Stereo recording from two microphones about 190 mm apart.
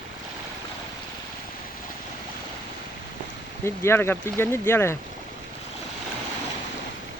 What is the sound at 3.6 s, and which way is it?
Speech, 15° left (ahead or behind).